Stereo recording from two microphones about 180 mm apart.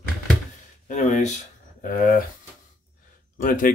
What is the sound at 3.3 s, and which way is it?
Speech, 50° left (ahead or behind).